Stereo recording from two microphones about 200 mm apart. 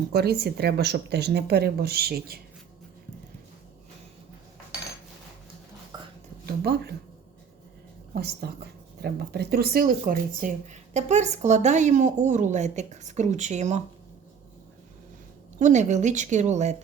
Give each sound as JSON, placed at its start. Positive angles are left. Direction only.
{"t": 0.1, "sound": "speech", "side_deg": -55}
{"t": 5.9, "sound": "a sound", "side_deg": -20}
{"t": 6.4, "sound": "speech", "side_deg": -55}
{"t": 8.1, "sound": "speech", "side_deg": -50}
{"t": 15.5, "sound": "speech", "side_deg": -35}